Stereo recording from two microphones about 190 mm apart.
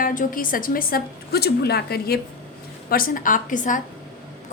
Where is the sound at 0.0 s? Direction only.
45° left (ahead or behind).